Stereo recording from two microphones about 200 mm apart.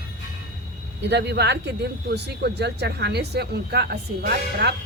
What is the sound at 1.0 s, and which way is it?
A woman's voice, 55° right (ahead or behind).